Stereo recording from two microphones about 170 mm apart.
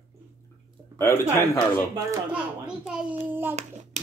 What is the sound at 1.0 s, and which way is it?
Speech, 15° left (ahead or behind).